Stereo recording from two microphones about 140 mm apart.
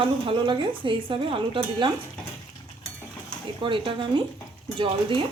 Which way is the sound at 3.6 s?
35° right (ahead or behind).